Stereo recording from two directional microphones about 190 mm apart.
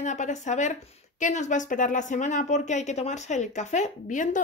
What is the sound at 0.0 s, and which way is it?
A woman's voice, 40° left (ahead or behind).